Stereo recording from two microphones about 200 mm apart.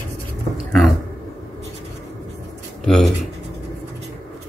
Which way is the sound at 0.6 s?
Centre (ahead or behind).